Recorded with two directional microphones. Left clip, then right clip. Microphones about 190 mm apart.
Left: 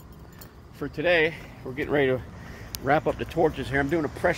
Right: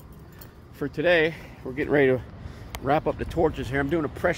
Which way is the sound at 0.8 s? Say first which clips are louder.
Right 3 dB; 45° right (ahead or behind).